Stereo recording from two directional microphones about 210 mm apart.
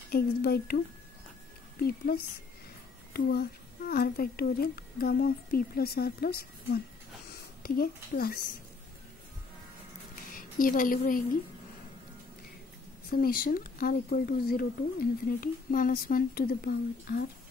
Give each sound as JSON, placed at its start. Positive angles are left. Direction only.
{"t": 0.1, "sound": "speech", "side_deg": 45}
{"t": 1.8, "sound": "speech", "side_deg": 45}
{"t": 3.9, "sound": "speech", "side_deg": 45}
{"t": 10.3, "sound": "a woman's voice", "side_deg": 40}
{"t": 13.1, "sound": "speech", "side_deg": 45}